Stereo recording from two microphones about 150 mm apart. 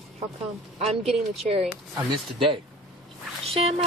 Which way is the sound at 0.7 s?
45° right (ahead or behind).